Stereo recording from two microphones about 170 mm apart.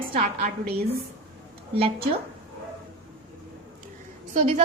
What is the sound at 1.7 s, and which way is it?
Speech, 35° right (ahead or behind).